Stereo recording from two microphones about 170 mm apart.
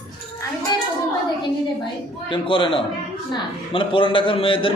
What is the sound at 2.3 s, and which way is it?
A man's voice, 30° left (ahead or behind).